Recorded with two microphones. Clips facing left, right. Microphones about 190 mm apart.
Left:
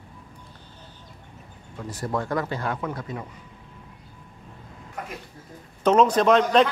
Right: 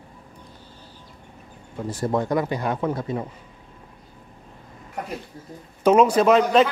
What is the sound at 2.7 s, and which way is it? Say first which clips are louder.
Speech: right 6 dB; 30° right (ahead or behind).